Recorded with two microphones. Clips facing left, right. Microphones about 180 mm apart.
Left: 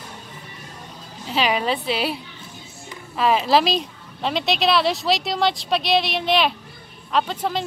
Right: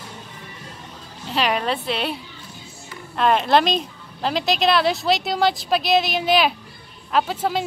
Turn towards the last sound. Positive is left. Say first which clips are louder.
# right 1 dB
turn(degrees=-5)  # may be behind; listen again after turning